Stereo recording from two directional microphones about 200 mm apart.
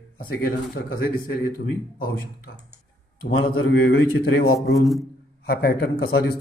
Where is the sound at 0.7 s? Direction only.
45° left (ahead or behind).